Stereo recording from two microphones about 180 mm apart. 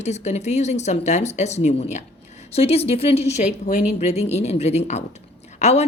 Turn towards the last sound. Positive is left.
turn(degrees=40)  # may be behind; listen again after turning